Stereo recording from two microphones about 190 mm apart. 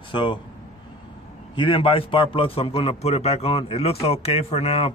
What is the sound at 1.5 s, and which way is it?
A man's voice, 25° left (ahead or behind).